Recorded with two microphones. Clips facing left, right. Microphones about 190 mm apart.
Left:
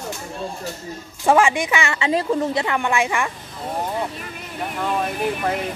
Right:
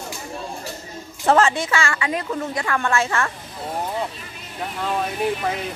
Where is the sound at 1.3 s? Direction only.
15° left (ahead or behind); by 2.7 s 30° left (ahead or behind).